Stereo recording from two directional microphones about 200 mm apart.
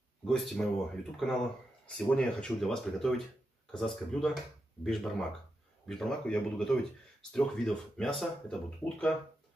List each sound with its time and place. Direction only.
0.3 s speech: centre (ahead or behind)